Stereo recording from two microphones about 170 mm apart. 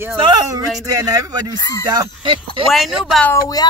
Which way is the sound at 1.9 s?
30° right (ahead or behind).